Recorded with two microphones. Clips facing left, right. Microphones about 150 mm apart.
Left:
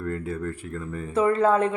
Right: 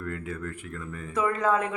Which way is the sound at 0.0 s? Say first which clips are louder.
Left 5 dB; 35° left (ahead or behind).